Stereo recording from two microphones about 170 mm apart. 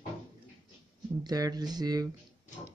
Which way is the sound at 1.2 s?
25° right (ahead or behind).